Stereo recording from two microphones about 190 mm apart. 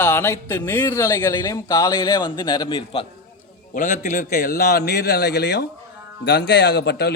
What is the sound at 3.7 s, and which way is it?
A man's voice, 45° left (ahead or behind).